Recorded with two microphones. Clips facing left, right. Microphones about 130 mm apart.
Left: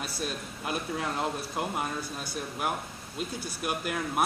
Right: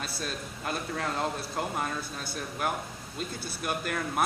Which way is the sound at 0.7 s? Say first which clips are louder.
Left 1 dB; 10° left (ahead or behind).